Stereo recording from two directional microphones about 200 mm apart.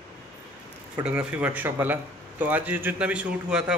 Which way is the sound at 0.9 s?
5° right (ahead or behind).